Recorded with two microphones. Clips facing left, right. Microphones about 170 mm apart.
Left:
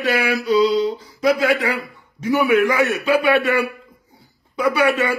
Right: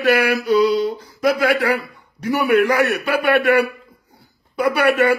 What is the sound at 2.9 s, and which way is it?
Speech, 55° right (ahead or behind).